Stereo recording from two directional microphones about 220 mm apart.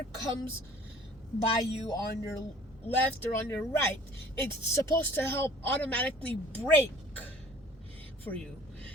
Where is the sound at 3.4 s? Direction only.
10° left (ahead or behind).